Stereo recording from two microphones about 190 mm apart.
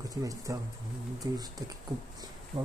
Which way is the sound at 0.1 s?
15° right (ahead or behind).